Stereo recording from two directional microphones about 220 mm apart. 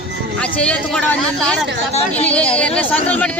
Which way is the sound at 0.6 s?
5° left (ahead or behind).